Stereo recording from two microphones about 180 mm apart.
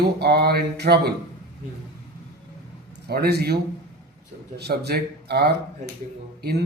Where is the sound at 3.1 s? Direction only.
60° right (ahead or behind).